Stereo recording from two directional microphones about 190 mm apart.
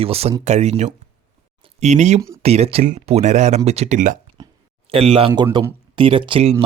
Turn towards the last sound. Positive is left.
turn(degrees=-25)  # may be behind; listen again after turning